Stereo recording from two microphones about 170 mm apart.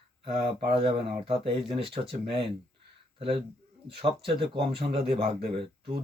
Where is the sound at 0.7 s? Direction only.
30° right (ahead or behind).